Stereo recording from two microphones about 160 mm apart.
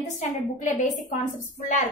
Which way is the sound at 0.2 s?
45° left (ahead or behind).